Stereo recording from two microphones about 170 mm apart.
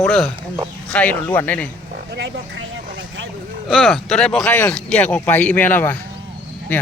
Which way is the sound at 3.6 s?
Centre (ahead or behind).